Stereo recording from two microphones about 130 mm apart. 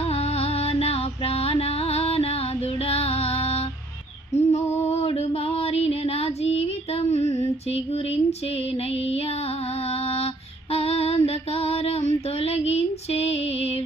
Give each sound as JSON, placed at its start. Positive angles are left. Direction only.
{"t": 0.0, "sound": "music", "side_deg": 50}
{"t": 4.4, "sound": "female singing", "side_deg": 55}
{"t": 10.7, "sound": "female singing", "side_deg": 50}